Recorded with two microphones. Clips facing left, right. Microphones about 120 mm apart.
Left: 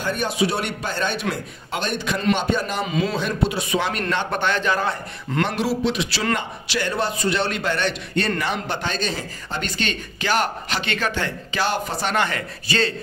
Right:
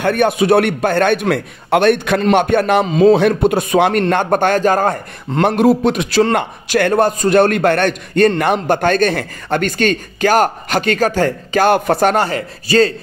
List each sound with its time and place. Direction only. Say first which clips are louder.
0.0 s a man's voice: right 8 dB; 60° right (ahead or behind)
12.3 s speech: right 8 dB; 35° right (ahead or behind)